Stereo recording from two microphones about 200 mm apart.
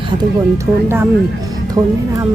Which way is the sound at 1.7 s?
15° right (ahead or behind).